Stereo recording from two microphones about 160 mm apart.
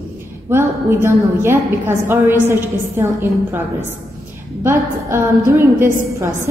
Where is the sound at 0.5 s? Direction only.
15° right (ahead or behind).